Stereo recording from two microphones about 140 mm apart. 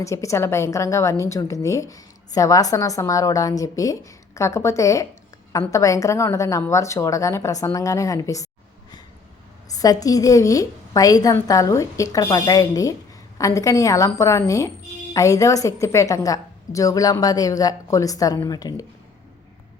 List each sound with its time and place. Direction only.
0.0 s a woman's voice: 20° left (ahead or behind)
9.6 s a woman's voice: 25° left (ahead or behind)